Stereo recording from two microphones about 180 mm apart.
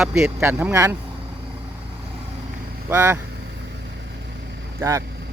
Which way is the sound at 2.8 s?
15° right (ahead or behind).